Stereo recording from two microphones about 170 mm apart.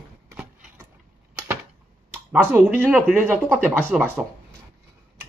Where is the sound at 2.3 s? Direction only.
10° right (ahead or behind).